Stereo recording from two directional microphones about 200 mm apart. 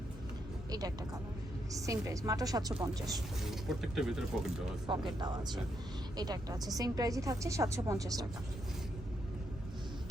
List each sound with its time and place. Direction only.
0.7 s a woman's voice: 20° right (ahead or behind)
3.4 s speech: centre (ahead or behind)
4.9 s a woman's voice: 25° right (ahead or behind)